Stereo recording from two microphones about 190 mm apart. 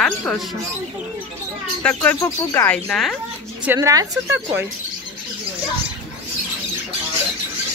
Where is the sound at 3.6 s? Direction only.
15° right (ahead or behind).